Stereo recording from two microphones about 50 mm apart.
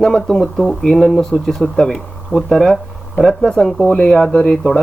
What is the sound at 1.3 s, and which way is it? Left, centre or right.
Speech, centre.